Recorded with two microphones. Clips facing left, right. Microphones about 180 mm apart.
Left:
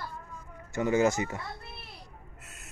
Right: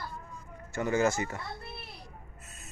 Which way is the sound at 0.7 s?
15° left (ahead or behind).